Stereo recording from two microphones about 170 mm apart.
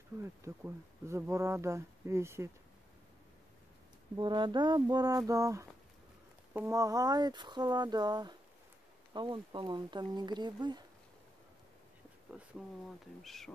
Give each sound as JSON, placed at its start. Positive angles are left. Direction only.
{"t": 0.5, "sound": "speech", "side_deg": -15}
{"t": 4.2, "sound": "speech", "side_deg": -25}
{"t": 12.3, "sound": "speech", "side_deg": -5}